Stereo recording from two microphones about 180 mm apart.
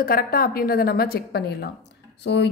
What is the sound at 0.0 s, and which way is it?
A woman's voice, 55° left (ahead or behind).